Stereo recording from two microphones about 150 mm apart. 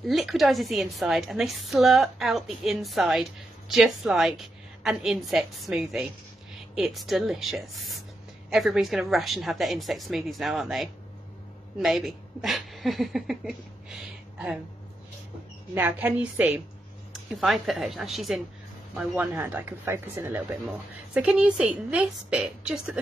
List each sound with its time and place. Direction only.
0.0 s a woman's voice: centre (ahead or behind)
15.7 s a woman's voice: 10° right (ahead or behind)